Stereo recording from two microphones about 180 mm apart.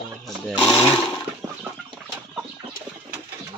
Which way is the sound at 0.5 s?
10° left (ahead or behind).